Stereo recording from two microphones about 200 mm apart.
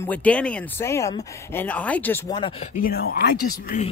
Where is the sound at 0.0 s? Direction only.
5° left (ahead or behind); by 2.7 s 25° left (ahead or behind).